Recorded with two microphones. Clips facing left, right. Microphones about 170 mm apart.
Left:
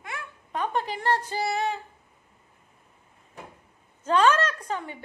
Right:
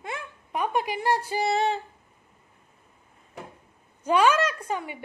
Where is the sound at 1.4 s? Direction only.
25° right (ahead or behind).